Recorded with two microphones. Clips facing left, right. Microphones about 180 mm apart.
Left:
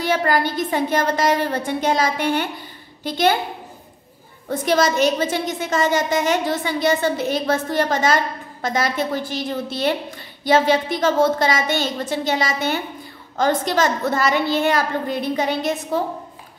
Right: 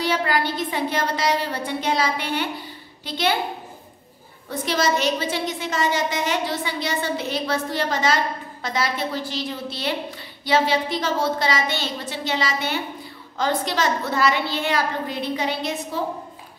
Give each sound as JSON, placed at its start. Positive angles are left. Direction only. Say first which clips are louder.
{"t": 0.0, "sound": "a woman's voice", "louder": "left 3 dB", "side_deg": 45}
{"t": 4.5, "sound": "a woman's voice", "louder": "left 4 dB", "side_deg": 50}